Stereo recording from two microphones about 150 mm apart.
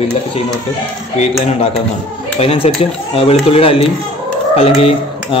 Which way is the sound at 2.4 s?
40° left (ahead or behind).